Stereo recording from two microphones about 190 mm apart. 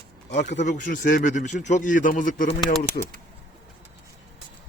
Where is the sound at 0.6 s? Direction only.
45° left (ahead or behind).